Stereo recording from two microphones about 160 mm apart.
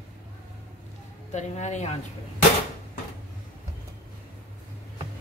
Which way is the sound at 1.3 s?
45° left (ahead or behind).